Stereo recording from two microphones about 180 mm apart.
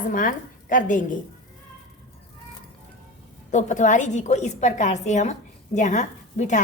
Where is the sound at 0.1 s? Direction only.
50° left (ahead or behind).